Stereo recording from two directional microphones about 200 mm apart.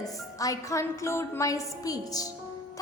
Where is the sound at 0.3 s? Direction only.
15° left (ahead or behind).